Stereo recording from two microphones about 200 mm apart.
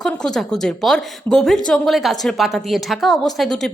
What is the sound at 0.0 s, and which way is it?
A woman's voice, centre (ahead or behind).